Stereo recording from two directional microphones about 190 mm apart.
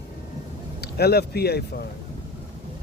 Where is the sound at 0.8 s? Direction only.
60° left (ahead or behind).